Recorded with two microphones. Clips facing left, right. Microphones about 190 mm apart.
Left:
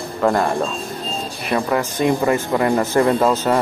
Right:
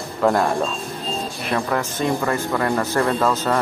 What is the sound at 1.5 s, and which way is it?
Speech, 10° left (ahead or behind).